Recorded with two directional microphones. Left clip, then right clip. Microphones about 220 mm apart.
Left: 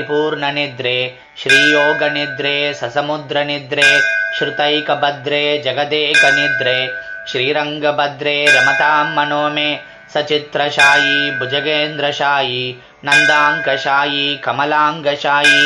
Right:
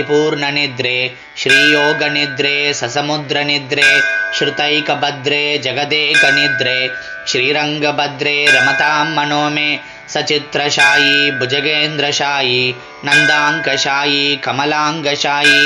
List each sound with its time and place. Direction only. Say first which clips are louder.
0.2 s speech: right 2 dB; 25° right (ahead or behind)
1.5 s speech: even; centre (ahead or behind)
2.0 s speech: right 2 dB; 25° right (ahead or behind)
3.8 s speech: even; centre (ahead or behind)
4.3 s speech: right 1 dB; 25° right (ahead or behind)
6.1 s speech: even; centre (ahead or behind)
7.2 s speech: right 2 dB; 25° right (ahead or behind)
8.5 s speech: even; centre (ahead or behind)
8.8 s speech: even; 25° right (ahead or behind)
10.8 s speech: even; centre (ahead or behind)
11.4 s speech: right 2 dB; 25° right (ahead or behind)